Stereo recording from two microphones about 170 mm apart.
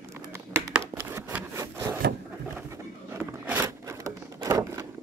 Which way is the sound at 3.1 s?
15° right (ahead or behind).